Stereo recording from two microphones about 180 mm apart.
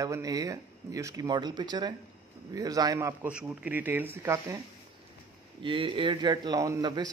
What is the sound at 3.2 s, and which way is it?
A man's voice, 5° right (ahead or behind).